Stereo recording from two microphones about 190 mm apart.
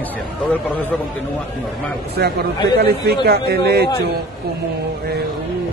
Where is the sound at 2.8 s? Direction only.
55° right (ahead or behind).